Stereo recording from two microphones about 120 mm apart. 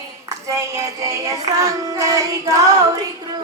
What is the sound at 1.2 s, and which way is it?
Child singing, 30° right (ahead or behind).